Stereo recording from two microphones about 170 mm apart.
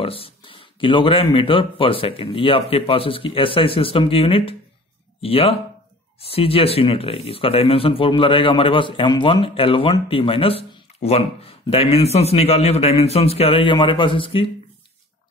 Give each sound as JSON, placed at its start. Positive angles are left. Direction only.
{"t": 0.0, "sound": "speech", "side_deg": 35}